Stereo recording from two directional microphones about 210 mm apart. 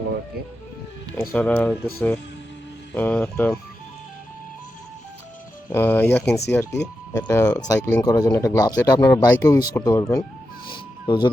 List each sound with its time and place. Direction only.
1.1 s speech: 5° left (ahead or behind)
5.7 s speech: 10° left (ahead or behind)
10.7 s music: 20° left (ahead or behind)